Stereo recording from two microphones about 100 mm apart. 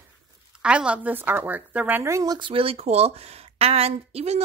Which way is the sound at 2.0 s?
35° right (ahead or behind).